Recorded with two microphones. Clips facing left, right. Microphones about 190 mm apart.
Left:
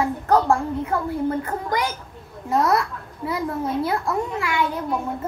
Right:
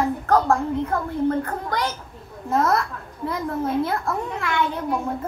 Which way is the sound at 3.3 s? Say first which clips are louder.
Even; 5° left (ahead or behind).